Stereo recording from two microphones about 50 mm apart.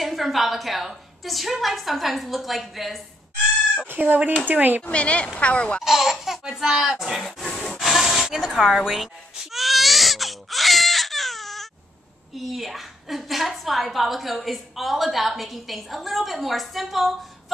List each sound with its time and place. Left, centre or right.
0.0 s a woman's voice: centre
3.8 s speech: right
4.8 s speech: left
5.8 s speech: centre
7.2 s a sound: centre
7.8 s baby cry: centre
12.4 s a woman's voice: centre